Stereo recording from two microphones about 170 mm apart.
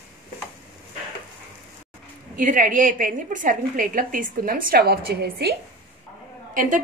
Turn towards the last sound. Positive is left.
turn(degrees=-50)  # may be behind; listen again after turning